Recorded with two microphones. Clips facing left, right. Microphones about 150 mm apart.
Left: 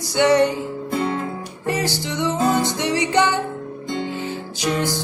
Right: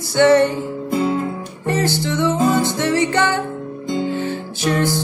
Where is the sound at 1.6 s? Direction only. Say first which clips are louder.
Right 4 dB; 15° left (ahead or behind).